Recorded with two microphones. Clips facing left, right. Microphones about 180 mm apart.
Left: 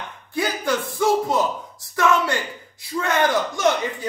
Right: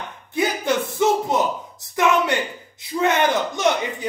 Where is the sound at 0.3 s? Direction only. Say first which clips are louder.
Right 2 dB; 20° right (ahead or behind).